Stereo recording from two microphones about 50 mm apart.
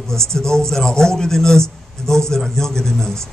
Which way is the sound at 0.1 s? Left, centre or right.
Centre.